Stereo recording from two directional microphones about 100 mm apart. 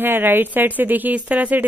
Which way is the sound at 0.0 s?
20° right (ahead or behind).